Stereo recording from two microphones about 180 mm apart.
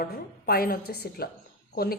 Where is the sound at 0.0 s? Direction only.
55° left (ahead or behind).